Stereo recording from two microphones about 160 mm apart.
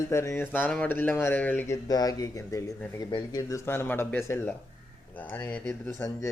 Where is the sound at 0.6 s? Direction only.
5° left (ahead or behind).